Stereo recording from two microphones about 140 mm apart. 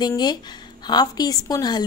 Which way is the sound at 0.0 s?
30° left (ahead or behind).